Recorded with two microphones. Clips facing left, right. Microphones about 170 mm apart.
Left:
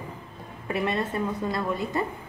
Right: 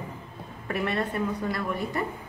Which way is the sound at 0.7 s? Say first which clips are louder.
Left 1 dB; 20° left (ahead or behind).